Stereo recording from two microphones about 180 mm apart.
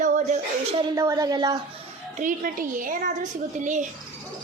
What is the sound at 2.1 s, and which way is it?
A woman's voice, 45° right (ahead or behind).